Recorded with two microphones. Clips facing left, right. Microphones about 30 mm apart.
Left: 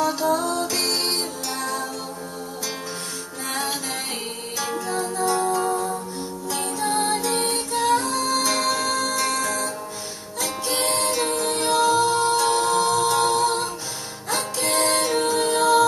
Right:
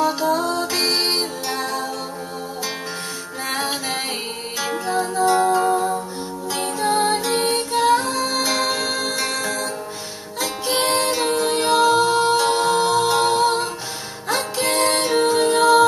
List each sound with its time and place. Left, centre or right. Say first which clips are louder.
0.0 s music: right 2 dB; right
4.6 s music: right 4 dB; right
14.9 s music: right 3 dB; right